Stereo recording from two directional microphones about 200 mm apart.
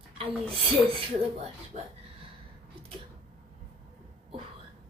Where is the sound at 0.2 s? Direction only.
25° right (ahead or behind).